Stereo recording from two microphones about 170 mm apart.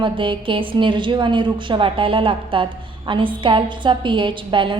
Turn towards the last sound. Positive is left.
turn(degrees=-30)  # may be behind; listen again after turning